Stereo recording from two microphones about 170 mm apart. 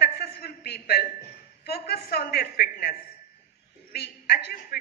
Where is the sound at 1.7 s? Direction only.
70° left (ahead or behind).